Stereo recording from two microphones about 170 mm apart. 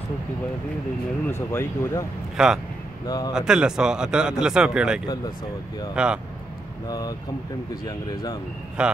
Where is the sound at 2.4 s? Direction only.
Centre (ahead or behind).